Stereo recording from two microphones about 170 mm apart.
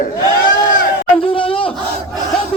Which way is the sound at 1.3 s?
30° left (ahead or behind).